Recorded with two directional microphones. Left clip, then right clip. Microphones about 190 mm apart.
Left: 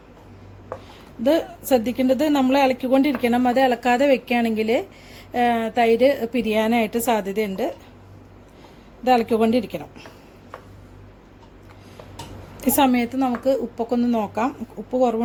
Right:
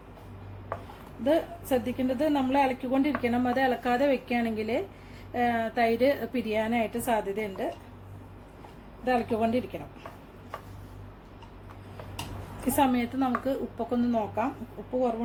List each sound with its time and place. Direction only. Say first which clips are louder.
1.2 s a woman's voice: left 6 dB; 50° left (ahead or behind)
9.0 s a woman's voice: left 9 dB; 50° left (ahead or behind)
12.7 s a woman's voice: left 6 dB; 45° left (ahead or behind)